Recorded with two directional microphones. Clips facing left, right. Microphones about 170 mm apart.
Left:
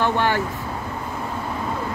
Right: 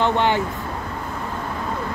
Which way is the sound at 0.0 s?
20° right (ahead or behind).